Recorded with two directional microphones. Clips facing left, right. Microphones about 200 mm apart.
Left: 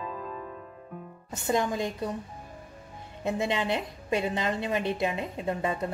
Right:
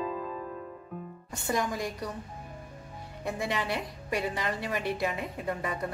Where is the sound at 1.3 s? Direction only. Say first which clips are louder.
Left 3 dB; 20° left (ahead or behind).